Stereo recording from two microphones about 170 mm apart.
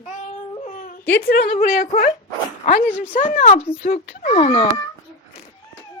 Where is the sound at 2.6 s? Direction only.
45° left (ahead or behind).